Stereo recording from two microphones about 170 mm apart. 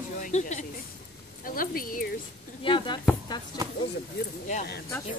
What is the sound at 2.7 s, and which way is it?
Speech, 25° left (ahead or behind).